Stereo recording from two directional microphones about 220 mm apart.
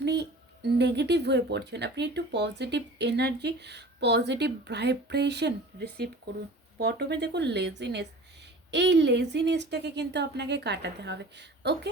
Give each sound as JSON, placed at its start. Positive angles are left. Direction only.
{"t": 0.0, "sound": "speech", "side_deg": -50}